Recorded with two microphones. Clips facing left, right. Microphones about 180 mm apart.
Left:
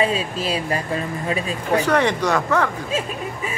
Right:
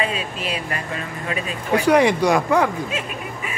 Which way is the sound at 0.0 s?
35° left (ahead or behind).